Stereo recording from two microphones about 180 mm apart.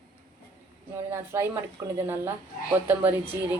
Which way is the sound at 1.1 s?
15° right (ahead or behind).